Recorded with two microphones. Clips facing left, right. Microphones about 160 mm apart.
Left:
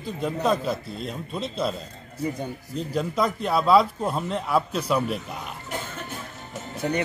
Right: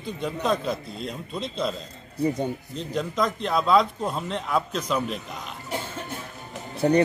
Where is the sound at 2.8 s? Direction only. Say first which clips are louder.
Left 2 dB; 5° left (ahead or behind).